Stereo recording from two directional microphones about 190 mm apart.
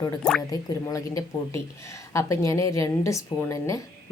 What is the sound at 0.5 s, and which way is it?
A woman's voice, 20° left (ahead or behind).